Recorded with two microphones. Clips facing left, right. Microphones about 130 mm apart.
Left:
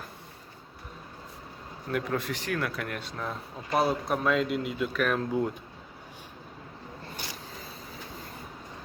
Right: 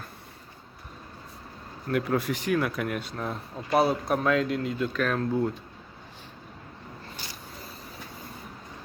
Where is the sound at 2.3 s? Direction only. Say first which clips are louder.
Right 5 dB; 10° right (ahead or behind); by 5.5 s 15° left (ahead or behind).